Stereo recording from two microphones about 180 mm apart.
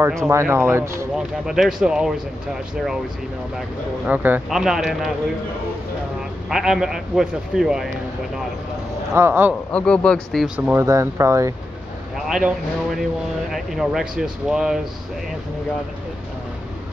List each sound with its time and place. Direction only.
0.2 s speech: 15° right (ahead or behind)
1.1 s speech: 5° right (ahead or behind)
3.5 s speech: 5° right (ahead or behind)
6.5 s speech: centre (ahead or behind)
9.1 s speech: 15° right (ahead or behind)
9.5 s speech: 5° left (ahead or behind); by 11.5 s 15° right (ahead or behind)
12.3 s speech: 5° right (ahead or behind)